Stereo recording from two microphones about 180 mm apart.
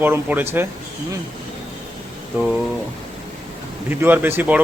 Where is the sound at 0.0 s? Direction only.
10° right (ahead or behind).